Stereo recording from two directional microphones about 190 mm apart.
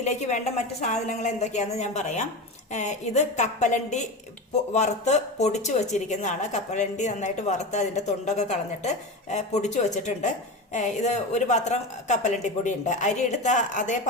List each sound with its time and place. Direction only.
0.0 s a woman's voice: 40° left (ahead or behind)